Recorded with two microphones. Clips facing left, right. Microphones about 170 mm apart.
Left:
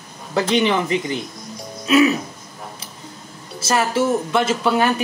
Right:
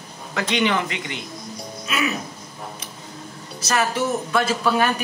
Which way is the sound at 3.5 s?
25° left (ahead or behind).